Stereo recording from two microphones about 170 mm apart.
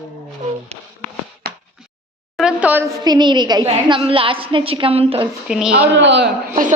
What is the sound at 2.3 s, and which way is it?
Speech, 5° right (ahead or behind).